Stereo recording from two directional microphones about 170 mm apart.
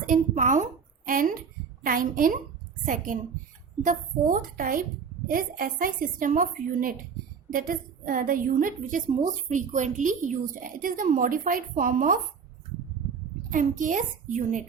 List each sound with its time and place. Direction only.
0.0 s a woman's voice: 50° right (ahead or behind)
13.5 s a woman's voice: 50° right (ahead or behind)